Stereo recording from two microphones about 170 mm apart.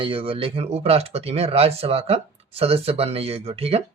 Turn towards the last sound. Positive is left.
turn(degrees=-35)  # may be behind; listen again after turning